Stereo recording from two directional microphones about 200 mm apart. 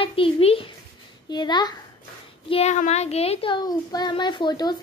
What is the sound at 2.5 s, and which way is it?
A child's voice, 35° left (ahead or behind).